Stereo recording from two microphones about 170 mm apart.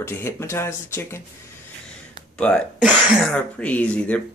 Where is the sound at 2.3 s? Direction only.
5° left (ahead or behind).